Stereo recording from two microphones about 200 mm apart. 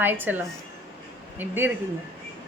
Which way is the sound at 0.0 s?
10° right (ahead or behind).